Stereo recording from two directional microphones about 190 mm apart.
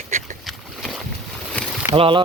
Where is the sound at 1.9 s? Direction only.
30° right (ahead or behind).